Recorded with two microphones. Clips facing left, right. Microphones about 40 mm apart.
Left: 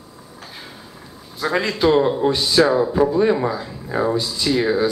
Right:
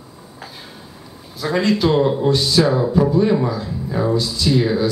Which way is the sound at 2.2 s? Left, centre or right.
Centre.